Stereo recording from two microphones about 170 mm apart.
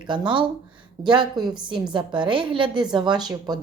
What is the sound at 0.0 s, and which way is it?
A woman's voice, 25° right (ahead or behind).